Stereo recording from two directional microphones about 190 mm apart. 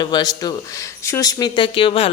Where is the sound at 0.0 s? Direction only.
20° left (ahead or behind).